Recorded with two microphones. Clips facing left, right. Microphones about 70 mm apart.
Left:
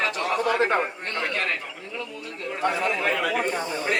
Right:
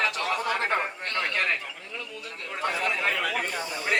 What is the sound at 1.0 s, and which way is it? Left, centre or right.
Speech, left.